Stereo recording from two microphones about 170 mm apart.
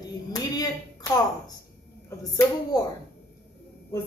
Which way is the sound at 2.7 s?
25° left (ahead or behind).